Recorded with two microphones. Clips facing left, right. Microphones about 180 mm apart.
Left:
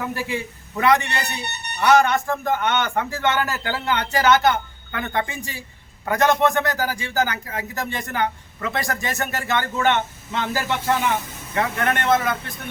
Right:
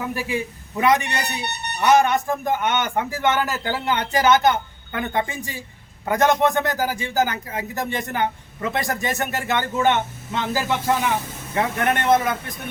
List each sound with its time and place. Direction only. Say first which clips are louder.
0.0 s a man's voice: right 1 dB; 15° right (ahead or behind)